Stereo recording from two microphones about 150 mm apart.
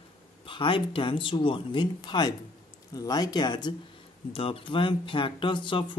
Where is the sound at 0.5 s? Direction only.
35° left (ahead or behind).